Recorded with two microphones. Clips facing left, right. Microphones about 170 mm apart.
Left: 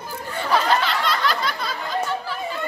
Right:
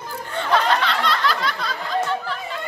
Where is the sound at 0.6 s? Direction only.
Centre (ahead or behind).